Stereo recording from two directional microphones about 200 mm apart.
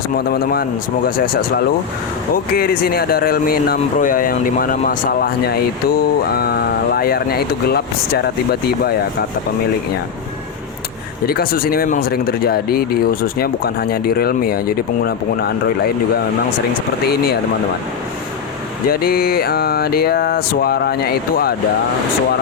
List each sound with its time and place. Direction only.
0.3 s speech: 50° left (ahead or behind)
11.3 s speech: 50° left (ahead or behind)
18.9 s speech: 50° left (ahead or behind)